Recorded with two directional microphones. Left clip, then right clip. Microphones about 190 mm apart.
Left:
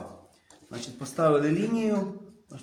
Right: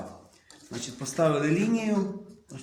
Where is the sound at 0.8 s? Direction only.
15° left (ahead or behind).